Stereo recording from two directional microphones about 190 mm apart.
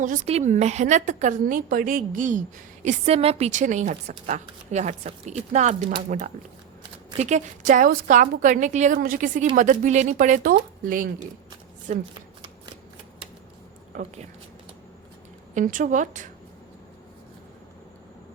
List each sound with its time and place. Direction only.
0.0 s a woman's voice: 40° right (ahead or behind)
2.8 s a woman's voice: 30° right (ahead or behind)
13.9 s speech: 40° right (ahead or behind)
15.5 s a woman's voice: 45° right (ahead or behind)